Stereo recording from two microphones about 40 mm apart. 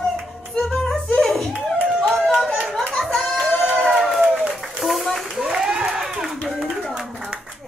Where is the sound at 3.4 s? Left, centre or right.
Left.